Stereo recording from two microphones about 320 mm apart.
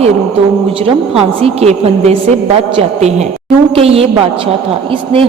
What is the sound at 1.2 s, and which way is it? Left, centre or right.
A man's voice, centre.